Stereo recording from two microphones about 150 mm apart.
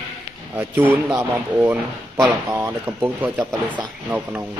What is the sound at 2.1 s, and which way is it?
Speech, 25° right (ahead or behind).